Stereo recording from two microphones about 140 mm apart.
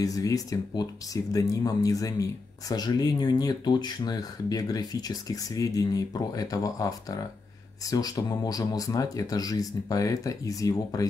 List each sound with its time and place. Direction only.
0.0 s speech: 25° left (ahead or behind)